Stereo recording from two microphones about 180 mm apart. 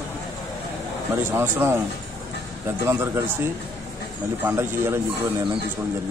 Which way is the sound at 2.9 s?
15° right (ahead or behind).